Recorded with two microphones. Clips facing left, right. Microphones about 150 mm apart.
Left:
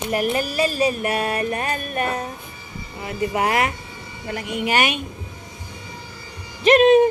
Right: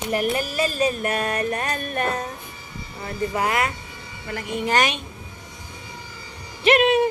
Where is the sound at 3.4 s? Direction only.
25° left (ahead or behind).